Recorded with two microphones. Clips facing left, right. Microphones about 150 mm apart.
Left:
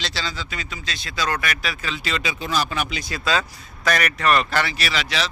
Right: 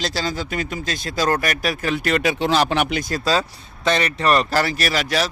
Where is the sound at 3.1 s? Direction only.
35° right (ahead or behind).